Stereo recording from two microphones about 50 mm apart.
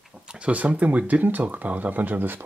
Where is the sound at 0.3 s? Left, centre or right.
Right.